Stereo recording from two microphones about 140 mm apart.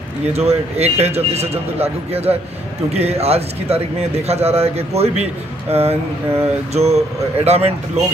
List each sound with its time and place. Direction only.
0.3 s a man's voice: 50° right (ahead or behind)